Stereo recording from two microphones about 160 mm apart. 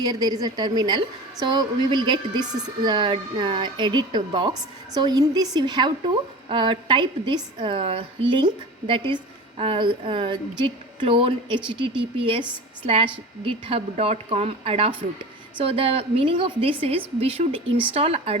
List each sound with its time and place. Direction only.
0.0 s a woman's voice: 25° right (ahead or behind)
9.6 s speech: 35° right (ahead or behind)